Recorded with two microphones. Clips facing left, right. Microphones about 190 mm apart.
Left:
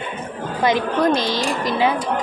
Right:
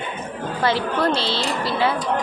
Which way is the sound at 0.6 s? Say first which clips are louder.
Left 3 dB; 15° left (ahead or behind).